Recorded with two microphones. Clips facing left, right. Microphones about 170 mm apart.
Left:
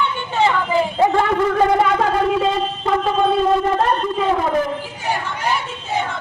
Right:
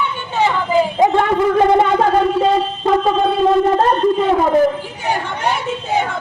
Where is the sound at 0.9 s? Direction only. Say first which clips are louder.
Even; 15° right (ahead or behind).